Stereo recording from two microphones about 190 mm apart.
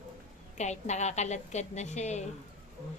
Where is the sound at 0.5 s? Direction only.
35° left (ahead or behind).